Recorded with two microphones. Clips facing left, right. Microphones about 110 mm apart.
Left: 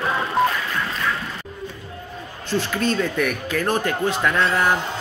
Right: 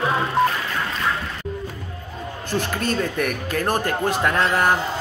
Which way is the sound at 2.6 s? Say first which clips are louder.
Left 2 dB; 45° right (ahead or behind).